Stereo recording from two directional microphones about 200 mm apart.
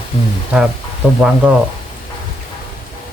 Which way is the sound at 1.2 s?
5° right (ahead or behind).